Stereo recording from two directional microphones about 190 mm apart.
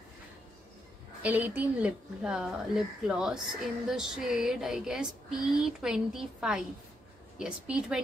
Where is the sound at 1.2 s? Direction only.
10° right (ahead or behind).